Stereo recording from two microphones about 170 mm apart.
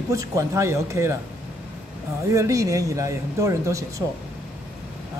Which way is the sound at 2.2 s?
20° right (ahead or behind).